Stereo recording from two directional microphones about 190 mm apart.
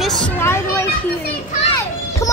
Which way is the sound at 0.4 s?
15° left (ahead or behind).